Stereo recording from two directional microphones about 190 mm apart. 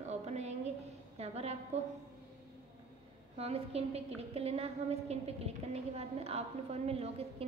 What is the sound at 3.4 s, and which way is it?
A woman's voice, 30° right (ahead or behind).